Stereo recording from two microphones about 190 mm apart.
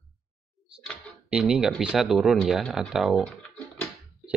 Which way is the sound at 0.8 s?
Centre (ahead or behind).